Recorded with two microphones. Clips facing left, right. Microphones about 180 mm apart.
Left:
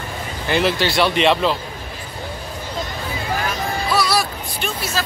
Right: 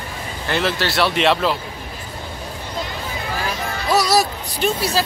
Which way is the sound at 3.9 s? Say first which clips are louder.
Right 4 dB; 40° right (ahead or behind).